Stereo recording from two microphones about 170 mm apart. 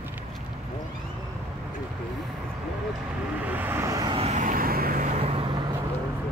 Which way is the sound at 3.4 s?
10° right (ahead or behind).